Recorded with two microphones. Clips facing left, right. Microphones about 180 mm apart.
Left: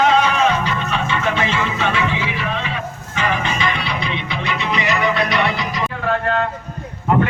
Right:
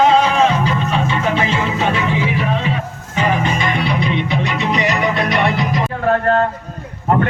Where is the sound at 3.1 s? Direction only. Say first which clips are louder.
Right 4 dB; 45° right (ahead or behind).